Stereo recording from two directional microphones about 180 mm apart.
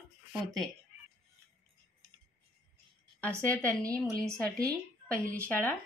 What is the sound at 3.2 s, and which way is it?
Speech, 10° left (ahead or behind).